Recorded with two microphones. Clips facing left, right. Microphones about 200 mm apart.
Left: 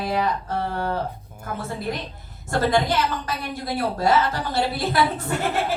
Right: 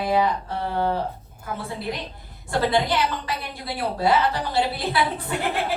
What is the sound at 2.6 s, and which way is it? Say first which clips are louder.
A woman's voice: left 1 dB; 45° left (ahead or behind).